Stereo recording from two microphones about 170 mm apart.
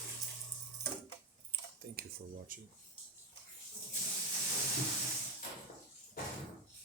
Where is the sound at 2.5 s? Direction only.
55° right (ahead or behind).